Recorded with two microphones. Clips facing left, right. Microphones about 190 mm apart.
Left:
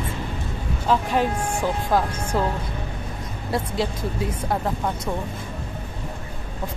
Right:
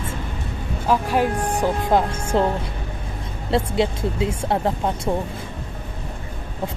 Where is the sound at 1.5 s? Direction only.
20° right (ahead or behind).